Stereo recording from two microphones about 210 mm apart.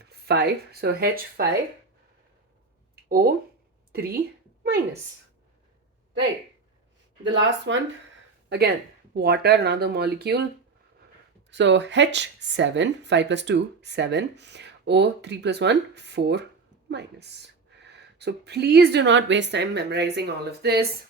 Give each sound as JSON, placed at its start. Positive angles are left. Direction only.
{"t": 0.0, "sound": "speech", "side_deg": -50}
{"t": 2.9, "sound": "a sound", "side_deg": -45}
{"t": 3.9, "sound": "speech", "side_deg": -45}
{"t": 7.3, "sound": "speech", "side_deg": -60}
{"t": 11.5, "sound": "speech", "side_deg": -55}